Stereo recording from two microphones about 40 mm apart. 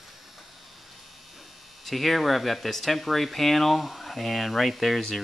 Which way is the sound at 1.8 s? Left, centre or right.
Centre.